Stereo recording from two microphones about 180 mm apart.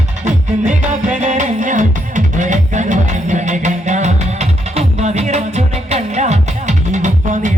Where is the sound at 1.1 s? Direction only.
40° right (ahead or behind).